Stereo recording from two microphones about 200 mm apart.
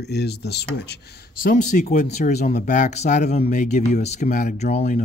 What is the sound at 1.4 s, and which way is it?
Speech, 40° left (ahead or behind).